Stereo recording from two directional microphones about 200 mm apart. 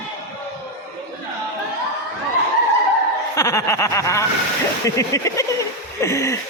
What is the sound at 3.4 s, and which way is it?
Speech, 15° left (ahead or behind).